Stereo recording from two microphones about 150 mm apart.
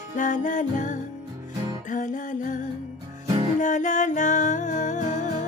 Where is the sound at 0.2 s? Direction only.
55° left (ahead or behind).